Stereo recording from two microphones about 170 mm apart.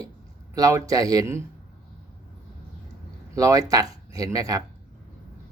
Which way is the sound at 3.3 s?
20° right (ahead or behind).